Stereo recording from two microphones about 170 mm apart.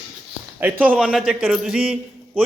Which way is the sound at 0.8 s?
10° right (ahead or behind).